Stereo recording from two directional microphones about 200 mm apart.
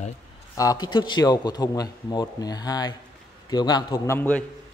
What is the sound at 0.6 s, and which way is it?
A man's voice, 20° left (ahead or behind).